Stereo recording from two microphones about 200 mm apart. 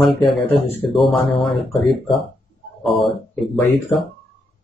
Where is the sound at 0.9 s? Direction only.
Centre (ahead or behind).